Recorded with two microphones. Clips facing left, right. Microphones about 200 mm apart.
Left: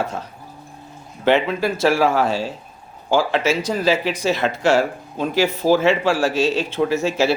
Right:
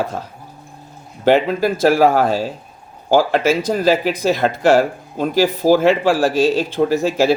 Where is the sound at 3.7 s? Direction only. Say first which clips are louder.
Right 3 dB; 45° right (ahead or behind).